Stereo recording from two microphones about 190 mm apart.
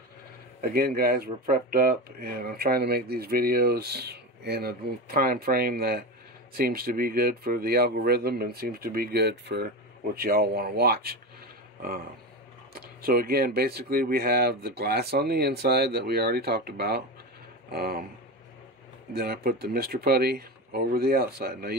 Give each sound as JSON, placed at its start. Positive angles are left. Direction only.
{"t": 0.6, "sound": "speech", "side_deg": -55}
{"t": 12.7, "sound": "speech", "side_deg": -50}
{"t": 19.1, "sound": "speech", "side_deg": -55}